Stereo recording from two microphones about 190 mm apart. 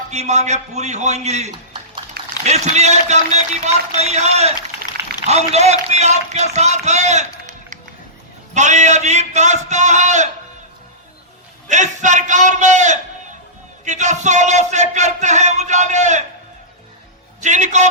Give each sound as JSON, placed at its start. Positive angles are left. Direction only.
{"t": 0.1, "sound": "speech", "side_deg": -35}
{"t": 11.7, "sound": "speech", "side_deg": -40}
{"t": 17.4, "sound": "speech", "side_deg": -40}